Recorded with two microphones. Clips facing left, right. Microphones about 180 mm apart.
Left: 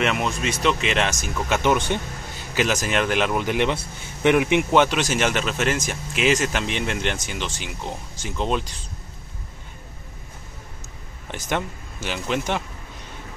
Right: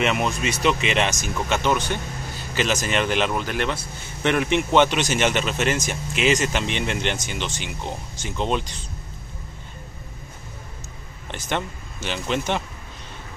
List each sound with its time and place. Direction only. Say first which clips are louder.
0.0 s speech: right 1 dB; centre (ahead or behind)
1.6 s speech: left 4 dB; 20° left (ahead or behind)
2.5 s speech: left 1 dB; 10° left (ahead or behind)
3.4 s speech: left 4 dB; 15° left (ahead or behind); by 8.6 s centre (ahead or behind)
11.2 s speech: left 1 dB; 10° left (ahead or behind)